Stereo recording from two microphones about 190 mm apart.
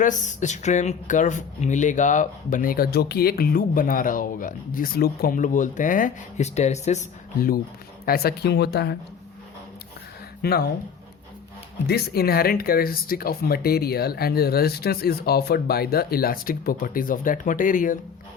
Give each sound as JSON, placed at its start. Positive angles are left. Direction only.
{"t": 0.0, "sound": "speech", "side_deg": 40}
{"t": 10.4, "sound": "speech", "side_deg": 55}
{"t": 11.9, "sound": "speech", "side_deg": 55}